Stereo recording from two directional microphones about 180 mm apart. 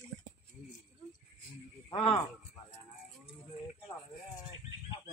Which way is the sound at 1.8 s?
25° left (ahead or behind).